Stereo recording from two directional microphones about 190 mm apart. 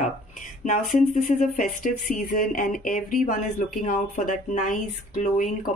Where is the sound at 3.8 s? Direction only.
45° left (ahead or behind).